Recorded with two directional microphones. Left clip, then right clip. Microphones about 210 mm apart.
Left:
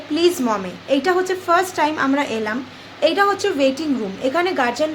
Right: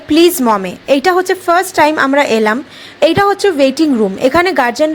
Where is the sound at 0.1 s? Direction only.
45° right (ahead or behind).